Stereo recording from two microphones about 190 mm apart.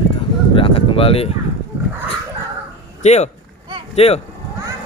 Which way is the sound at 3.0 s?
35° left (ahead or behind).